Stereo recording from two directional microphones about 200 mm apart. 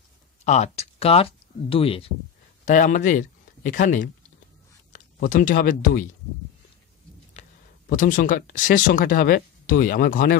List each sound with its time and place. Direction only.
0.5 s speech: 35° left (ahead or behind)
2.6 s speech: 40° left (ahead or behind)
7.4 s a sound: 35° left (ahead or behind)
7.9 s speech: 40° left (ahead or behind)